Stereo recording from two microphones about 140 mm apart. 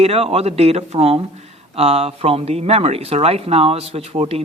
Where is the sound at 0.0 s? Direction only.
45° right (ahead or behind).